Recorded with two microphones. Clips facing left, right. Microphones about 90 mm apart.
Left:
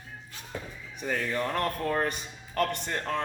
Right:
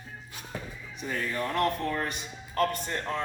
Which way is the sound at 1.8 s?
50° left (ahead or behind).